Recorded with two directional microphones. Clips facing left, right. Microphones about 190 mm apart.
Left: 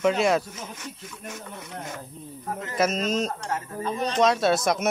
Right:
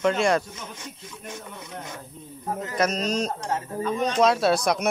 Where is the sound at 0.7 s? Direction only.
15° right (ahead or behind).